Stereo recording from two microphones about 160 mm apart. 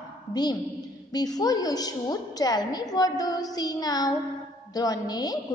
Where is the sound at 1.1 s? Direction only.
25° left (ahead or behind).